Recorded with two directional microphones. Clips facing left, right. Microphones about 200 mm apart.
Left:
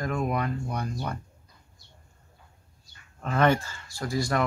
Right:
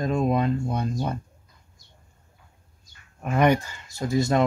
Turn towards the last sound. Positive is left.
turn(degrees=-25)  # may be behind; listen again after turning